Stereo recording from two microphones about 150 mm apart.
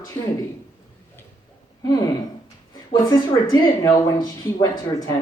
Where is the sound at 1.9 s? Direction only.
25° left (ahead or behind).